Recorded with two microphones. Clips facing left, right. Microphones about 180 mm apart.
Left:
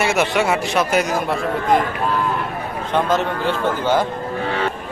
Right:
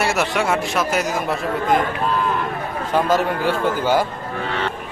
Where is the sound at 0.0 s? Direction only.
Centre (ahead or behind).